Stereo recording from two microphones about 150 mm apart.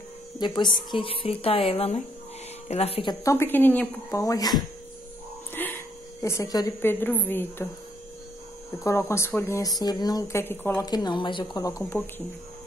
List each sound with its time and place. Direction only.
0.4 s a woman's voice: 30° left (ahead or behind)
3.3 s a woman's voice: 15° left (ahead or behind)
4.2 s speech: 25° left (ahead or behind)
5.5 s a sound: 10° left (ahead or behind)
6.2 s a woman's voice: 20° left (ahead or behind)
8.8 s speech: 20° left (ahead or behind)
10.9 s speech: 30° left (ahead or behind)